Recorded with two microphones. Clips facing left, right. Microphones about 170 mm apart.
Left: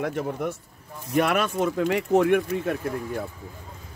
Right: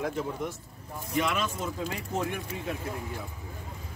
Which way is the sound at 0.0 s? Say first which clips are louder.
Left 4 dB; 65° left (ahead or behind).